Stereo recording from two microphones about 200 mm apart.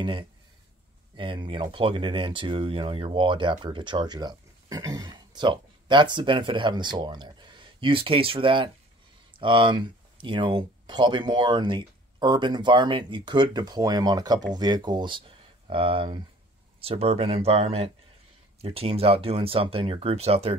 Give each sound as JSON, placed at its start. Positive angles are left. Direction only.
{"t": 1.1, "sound": "speech", "side_deg": -25}